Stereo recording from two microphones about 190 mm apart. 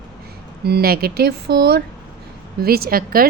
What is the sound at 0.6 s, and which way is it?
A woman's voice, 55° right (ahead or behind).